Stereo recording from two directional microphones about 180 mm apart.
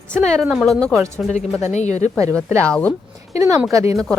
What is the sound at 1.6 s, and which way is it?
Speech, 40° left (ahead or behind).